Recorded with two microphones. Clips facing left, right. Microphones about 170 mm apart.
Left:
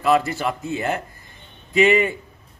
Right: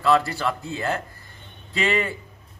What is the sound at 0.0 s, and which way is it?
A man's voice, 20° left (ahead or behind).